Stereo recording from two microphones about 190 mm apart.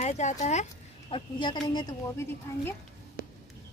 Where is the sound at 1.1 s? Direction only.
25° left (ahead or behind).